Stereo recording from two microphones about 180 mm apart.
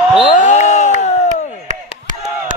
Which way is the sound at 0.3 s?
45° left (ahead or behind).